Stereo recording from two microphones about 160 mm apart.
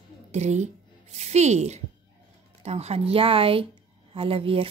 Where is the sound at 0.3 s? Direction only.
45° right (ahead or behind).